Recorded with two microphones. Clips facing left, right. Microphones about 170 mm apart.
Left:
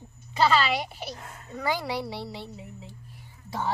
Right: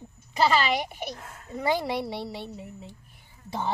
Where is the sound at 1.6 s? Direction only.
25° right (ahead or behind).